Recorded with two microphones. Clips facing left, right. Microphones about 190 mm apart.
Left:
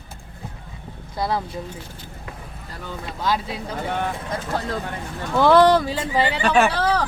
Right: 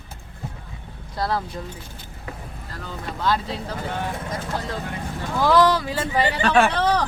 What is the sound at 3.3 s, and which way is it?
Speech, 10° left (ahead or behind).